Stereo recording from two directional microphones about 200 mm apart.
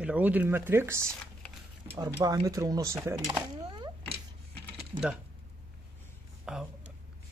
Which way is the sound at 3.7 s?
25° right (ahead or behind).